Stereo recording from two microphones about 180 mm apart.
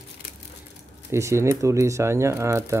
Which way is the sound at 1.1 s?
15° right (ahead or behind).